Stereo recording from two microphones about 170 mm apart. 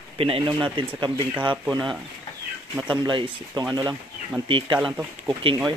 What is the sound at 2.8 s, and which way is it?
Speech, 25° right (ahead or behind).